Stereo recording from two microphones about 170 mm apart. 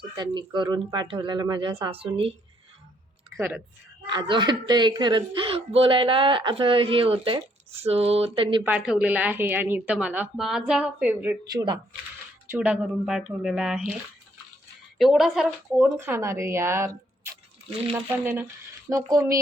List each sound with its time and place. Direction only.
0.2 s a woman's voice: 25° right (ahead or behind)
3.3 s speech: 10° right (ahead or behind)
4.1 s a woman's voice: 25° right (ahead or behind)
7.8 s a sound: 35° right (ahead or behind)
8.6 s a woman's voice: 5° right (ahead or behind)
11.5 s a woman's voice: 25° right (ahead or behind)
12.5 s speech: 10° right (ahead or behind)
14.9 s a woman's voice: centre (ahead or behind); by 17.0 s 15° right (ahead or behind)
18.9 s a woman's voice: 20° right (ahead or behind)